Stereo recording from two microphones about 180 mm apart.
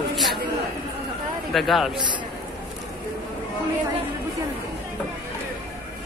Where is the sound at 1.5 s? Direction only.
Centre (ahead or behind).